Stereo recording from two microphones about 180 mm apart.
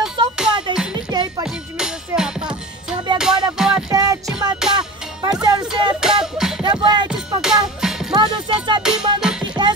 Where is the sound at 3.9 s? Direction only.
20° right (ahead or behind).